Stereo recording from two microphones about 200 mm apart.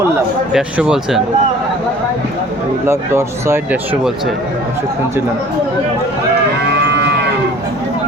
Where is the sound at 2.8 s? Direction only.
15° right (ahead or behind).